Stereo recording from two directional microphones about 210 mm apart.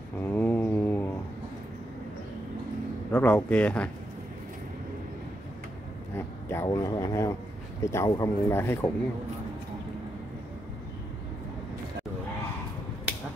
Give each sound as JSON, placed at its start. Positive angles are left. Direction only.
{"t": 0.2, "sound": "mantra", "side_deg": 10}
{"t": 3.1, "sound": "speech", "side_deg": 10}
{"t": 6.1, "sound": "speech", "side_deg": 15}